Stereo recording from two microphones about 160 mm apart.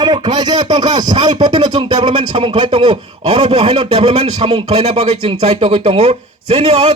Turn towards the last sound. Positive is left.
turn(degrees=-35)  # may be behind; listen again after turning